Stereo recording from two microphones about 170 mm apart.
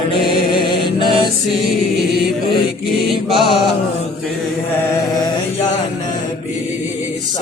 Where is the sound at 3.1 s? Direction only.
Centre (ahead or behind).